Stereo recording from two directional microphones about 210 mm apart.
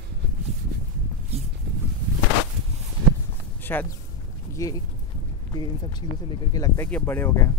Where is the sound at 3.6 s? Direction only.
10° left (ahead or behind).